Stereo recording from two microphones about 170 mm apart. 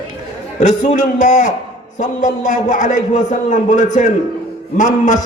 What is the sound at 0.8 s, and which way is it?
A man's voice, 50° left (ahead or behind).